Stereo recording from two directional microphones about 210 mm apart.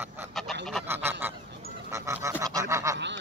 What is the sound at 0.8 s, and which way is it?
Goose, 10° right (ahead or behind).